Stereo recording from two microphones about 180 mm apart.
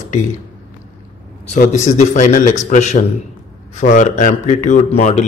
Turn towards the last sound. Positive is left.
turn(degrees=40)  # may be behind; listen again after turning